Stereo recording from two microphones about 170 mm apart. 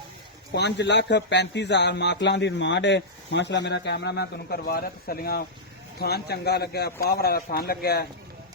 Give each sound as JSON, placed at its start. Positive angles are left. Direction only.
{"t": 0.5, "sound": "a man's voice", "side_deg": 90}